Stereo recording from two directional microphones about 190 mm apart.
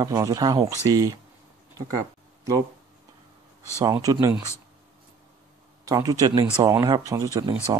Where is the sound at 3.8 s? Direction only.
20° right (ahead or behind).